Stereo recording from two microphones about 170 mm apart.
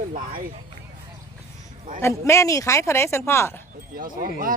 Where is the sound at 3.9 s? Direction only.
55° right (ahead or behind).